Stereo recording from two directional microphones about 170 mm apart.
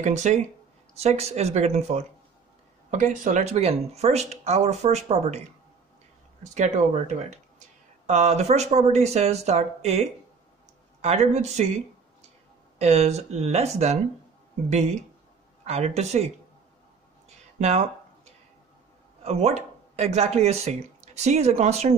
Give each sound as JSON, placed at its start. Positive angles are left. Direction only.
{"t": 0.0, "sound": "speech", "side_deg": -45}
{"t": 6.4, "sound": "speech", "side_deg": -45}
{"t": 17.6, "sound": "a sound", "side_deg": -40}
{"t": 19.2, "sound": "speech", "side_deg": -40}